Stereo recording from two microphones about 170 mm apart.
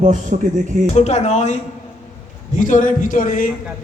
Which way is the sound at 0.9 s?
40° left (ahead or behind).